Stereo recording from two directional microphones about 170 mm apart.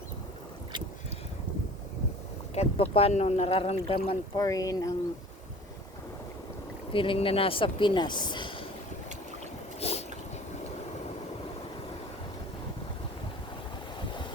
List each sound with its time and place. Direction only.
2.6 s speech: 35° left (ahead or behind)
4.4 s speech: 20° left (ahead or behind)
6.9 s speech: 30° left (ahead or behind)
9.8 s boat: 35° left (ahead or behind)